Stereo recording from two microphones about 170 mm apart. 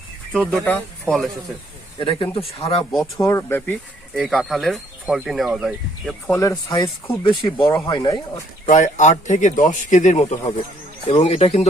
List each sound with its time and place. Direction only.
0.6 s speech: 5° left (ahead or behind)
2.0 s speech: 30° left (ahead or behind)
3.0 s speech: 15° left (ahead or behind)
4.1 s speech: centre (ahead or behind)
6.3 s speech: 15° left (ahead or behind)
8.6 s speech: 45° left (ahead or behind)